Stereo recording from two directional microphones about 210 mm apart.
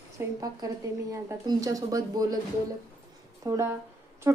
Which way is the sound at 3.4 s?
15° right (ahead or behind).